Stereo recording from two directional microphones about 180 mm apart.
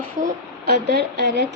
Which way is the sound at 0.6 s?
65° right (ahead or behind).